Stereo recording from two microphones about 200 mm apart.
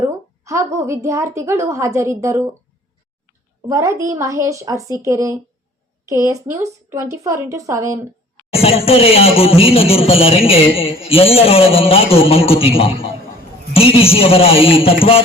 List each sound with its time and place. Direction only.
0.0 s a woman's voice: 15° right (ahead or behind)
3.7 s a woman's voice: 15° right (ahead or behind)
8.5 s speech: 30° left (ahead or behind)